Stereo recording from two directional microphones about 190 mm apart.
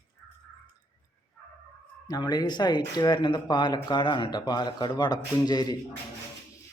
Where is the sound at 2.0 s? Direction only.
20° left (ahead or behind).